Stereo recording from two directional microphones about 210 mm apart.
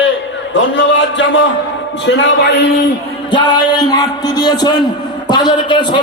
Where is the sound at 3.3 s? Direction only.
20° left (ahead or behind).